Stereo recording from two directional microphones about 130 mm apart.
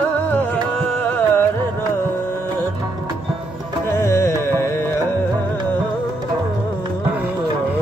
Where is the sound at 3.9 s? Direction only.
20° left (ahead or behind).